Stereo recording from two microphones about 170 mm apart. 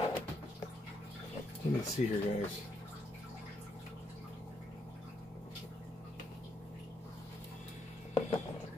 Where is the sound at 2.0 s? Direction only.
40° left (ahead or behind).